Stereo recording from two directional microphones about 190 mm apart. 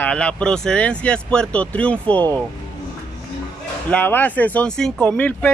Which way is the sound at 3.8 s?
10° left (ahead or behind).